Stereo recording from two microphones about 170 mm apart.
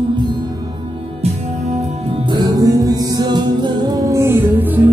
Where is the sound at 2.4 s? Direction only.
25° right (ahead or behind).